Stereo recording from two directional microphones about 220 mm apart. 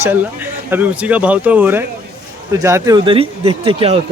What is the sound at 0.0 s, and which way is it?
Speech, 10° right (ahead or behind).